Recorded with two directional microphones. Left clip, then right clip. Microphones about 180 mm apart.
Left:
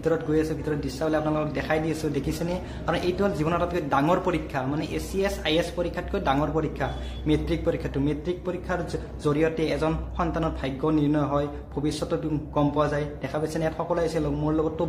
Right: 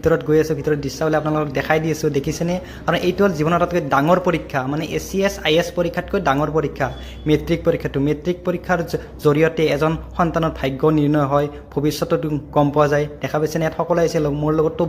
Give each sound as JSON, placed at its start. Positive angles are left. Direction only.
{"t": 0.0, "sound": "a man's voice", "side_deg": -35}